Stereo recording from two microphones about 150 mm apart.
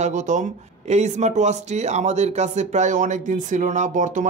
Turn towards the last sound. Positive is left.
turn(degrees=-55)  # may be behind; listen again after turning